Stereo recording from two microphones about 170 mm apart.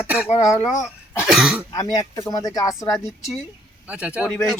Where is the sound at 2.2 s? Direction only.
20° left (ahead or behind).